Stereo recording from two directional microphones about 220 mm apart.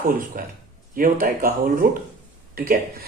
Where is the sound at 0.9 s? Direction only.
40° right (ahead or behind).